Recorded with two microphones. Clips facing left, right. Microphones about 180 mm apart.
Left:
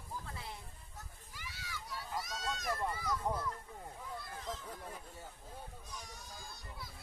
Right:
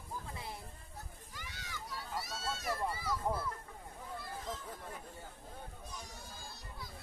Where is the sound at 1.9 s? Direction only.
Centre (ahead or behind).